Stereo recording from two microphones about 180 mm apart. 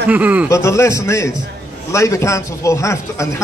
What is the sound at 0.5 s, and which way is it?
Speech, 15° left (ahead or behind).